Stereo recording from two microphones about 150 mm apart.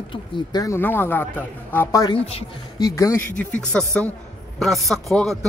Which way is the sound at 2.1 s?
40° left (ahead or behind).